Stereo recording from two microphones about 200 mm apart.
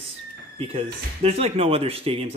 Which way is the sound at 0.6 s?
30° right (ahead or behind).